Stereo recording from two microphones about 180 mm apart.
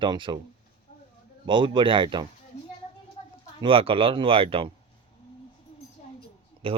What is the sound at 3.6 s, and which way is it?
Speech, 30° right (ahead or behind).